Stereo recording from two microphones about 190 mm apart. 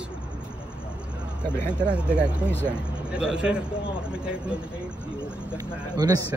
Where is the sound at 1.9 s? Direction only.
5° right (ahead or behind).